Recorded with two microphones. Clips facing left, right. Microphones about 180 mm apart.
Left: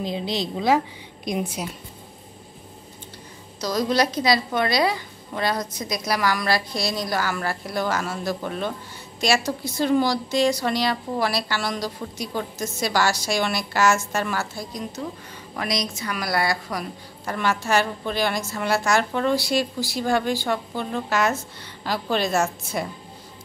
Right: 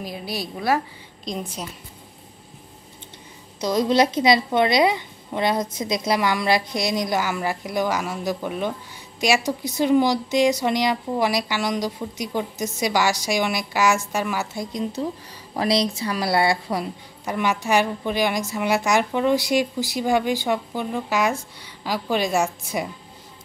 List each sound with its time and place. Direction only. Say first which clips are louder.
0.0 s a woman's voice: left 4 dB; 25° left (ahead or behind)
1.2 s a woman's voice: left 3 dB; 10° left (ahead or behind)
3.6 s a woman's voice: right 3 dB; 25° right (ahead or behind)